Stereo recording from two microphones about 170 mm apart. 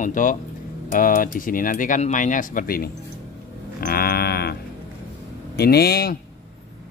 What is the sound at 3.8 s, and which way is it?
Sheep, 65° left (ahead or behind).